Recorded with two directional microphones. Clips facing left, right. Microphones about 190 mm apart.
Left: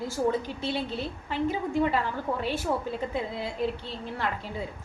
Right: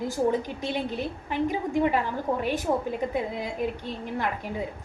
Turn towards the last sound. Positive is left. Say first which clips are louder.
# right 2 dB
turn(degrees=-15)  # may be behind; listen again after turning